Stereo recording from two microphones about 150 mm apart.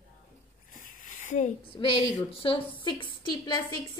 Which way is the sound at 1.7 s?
35° left (ahead or behind).